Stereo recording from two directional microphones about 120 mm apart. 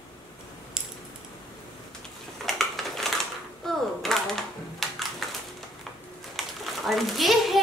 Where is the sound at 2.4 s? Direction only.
Centre (ahead or behind).